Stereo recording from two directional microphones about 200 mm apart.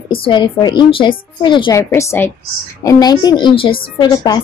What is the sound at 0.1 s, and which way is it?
A woman's voice, 25° left (ahead or behind).